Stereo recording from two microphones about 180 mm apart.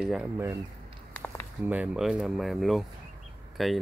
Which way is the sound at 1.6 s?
5° right (ahead or behind).